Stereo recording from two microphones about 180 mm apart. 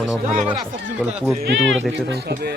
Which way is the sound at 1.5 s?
85° right.